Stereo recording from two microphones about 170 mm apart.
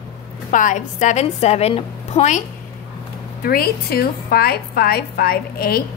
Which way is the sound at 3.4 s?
65° left (ahead or behind).